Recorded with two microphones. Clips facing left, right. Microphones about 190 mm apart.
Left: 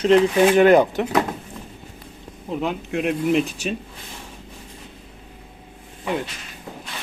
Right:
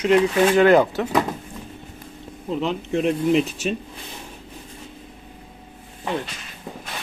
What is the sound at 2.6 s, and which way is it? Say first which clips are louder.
Speech: right 1 dB; 5° left (ahead or behind).